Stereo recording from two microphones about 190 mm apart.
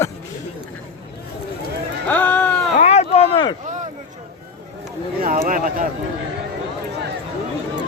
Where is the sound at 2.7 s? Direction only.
35° left (ahead or behind).